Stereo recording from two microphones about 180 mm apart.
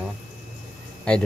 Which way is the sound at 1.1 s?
5° left (ahead or behind).